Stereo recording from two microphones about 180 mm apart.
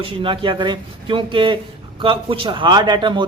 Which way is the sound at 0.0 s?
30° right (ahead or behind).